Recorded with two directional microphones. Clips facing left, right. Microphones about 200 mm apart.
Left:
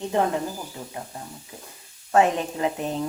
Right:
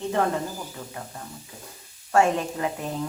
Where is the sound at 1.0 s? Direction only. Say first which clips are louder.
Left 1 dB; 25° left (ahead or behind).